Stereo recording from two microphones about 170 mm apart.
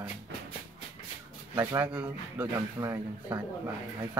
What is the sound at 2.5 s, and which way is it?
Speech, 20° right (ahead or behind).